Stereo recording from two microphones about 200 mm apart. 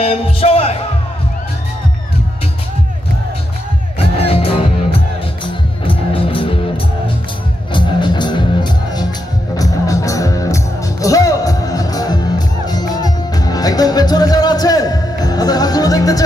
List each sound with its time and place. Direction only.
0.0 s speech: 30° left (ahead or behind)
4.3 s music: 30° left (ahead or behind)
7.7 s music: 25° left (ahead or behind)